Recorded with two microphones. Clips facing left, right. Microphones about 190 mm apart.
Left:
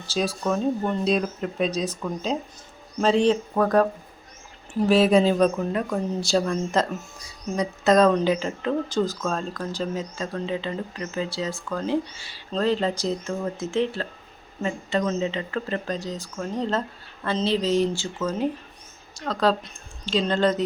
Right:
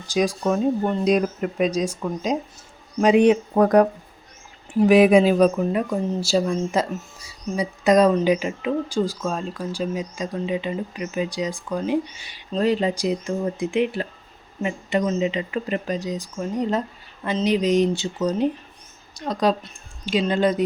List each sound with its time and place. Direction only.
0.1 s speech: 15° right (ahead or behind)